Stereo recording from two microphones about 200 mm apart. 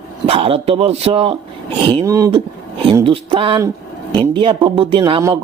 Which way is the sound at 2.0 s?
15° right (ahead or behind).